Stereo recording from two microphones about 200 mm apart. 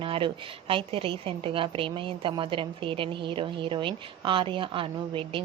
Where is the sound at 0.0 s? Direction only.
25° right (ahead or behind).